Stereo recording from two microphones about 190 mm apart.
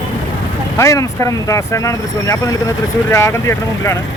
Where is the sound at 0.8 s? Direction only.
15° left (ahead or behind).